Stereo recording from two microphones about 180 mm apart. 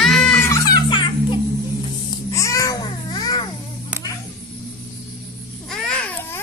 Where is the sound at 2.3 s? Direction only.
15° left (ahead or behind).